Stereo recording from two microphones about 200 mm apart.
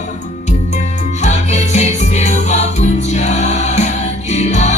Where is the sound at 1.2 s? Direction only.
35° left (ahead or behind).